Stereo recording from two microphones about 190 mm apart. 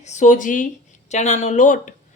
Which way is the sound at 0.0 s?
40° left (ahead or behind).